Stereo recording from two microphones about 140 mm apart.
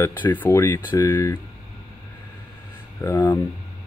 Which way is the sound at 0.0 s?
20° left (ahead or behind).